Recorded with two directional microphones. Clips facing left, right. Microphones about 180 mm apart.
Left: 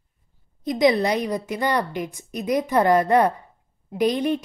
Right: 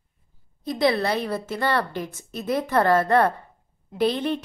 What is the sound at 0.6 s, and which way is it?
A woman's voice, 15° left (ahead or behind).